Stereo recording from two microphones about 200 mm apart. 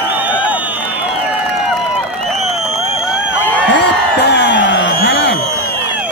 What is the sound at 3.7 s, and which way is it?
Music, 55° left (ahead or behind).